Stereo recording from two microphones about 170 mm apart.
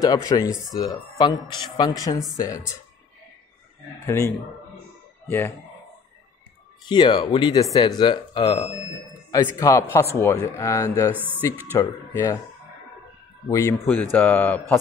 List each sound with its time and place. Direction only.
0.0 s speech: 25° left (ahead or behind)
4.0 s speech: 15° left (ahead or behind)
5.3 s speech: 10° left (ahead or behind)
6.9 s speech: 30° left (ahead or behind)
11.1 s speech: 10° right (ahead or behind)
11.7 s speech: 20° left (ahead or behind)
13.5 s speech: 15° left (ahead or behind)